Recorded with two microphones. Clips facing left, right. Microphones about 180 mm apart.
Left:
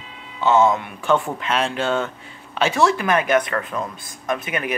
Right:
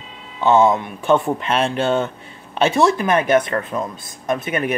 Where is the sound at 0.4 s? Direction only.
15° right (ahead or behind).